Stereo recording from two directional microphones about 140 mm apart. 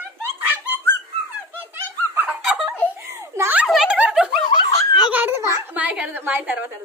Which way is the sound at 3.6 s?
5° right (ahead or behind).